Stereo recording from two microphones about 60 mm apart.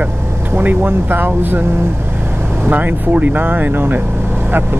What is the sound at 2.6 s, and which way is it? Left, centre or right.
Speech, right.